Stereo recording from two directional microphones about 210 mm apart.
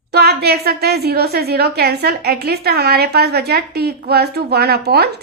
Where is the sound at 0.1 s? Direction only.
50° right (ahead or behind).